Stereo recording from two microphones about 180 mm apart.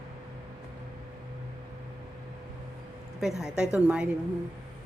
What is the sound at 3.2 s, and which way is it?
Speech, centre (ahead or behind).